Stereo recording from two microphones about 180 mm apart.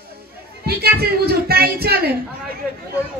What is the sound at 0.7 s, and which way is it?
Speech, 60° right (ahead or behind).